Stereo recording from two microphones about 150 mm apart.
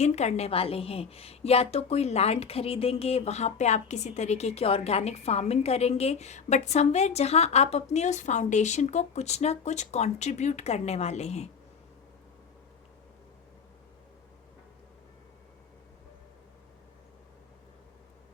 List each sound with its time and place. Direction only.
0.0 s a woman's voice: 50° left (ahead or behind)